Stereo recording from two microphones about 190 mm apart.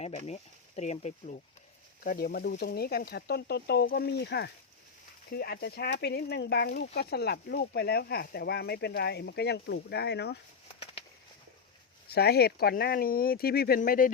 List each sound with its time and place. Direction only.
0.8 s speech: 35° left (ahead or behind)
2.0 s speech: 50° left (ahead or behind)
12.0 s speech: 55° left (ahead or behind)